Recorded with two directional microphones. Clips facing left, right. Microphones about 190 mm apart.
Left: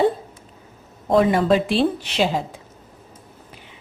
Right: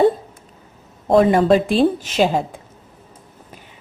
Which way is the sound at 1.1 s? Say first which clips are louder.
Right 3 dB; 40° right (ahead or behind).